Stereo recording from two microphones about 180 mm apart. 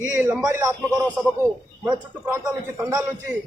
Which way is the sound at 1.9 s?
10° right (ahead or behind).